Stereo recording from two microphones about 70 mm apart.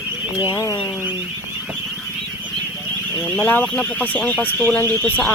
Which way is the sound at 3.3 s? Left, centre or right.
Left.